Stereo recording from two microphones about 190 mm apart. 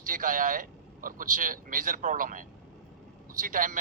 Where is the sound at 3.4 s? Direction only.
45° right (ahead or behind).